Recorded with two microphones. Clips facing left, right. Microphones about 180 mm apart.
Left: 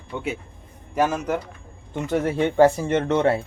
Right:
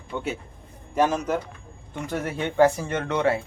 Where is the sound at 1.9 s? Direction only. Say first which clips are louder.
Left 6 dB; 25° left (ahead or behind).